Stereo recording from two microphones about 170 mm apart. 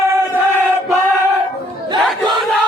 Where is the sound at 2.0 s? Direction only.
Centre (ahead or behind).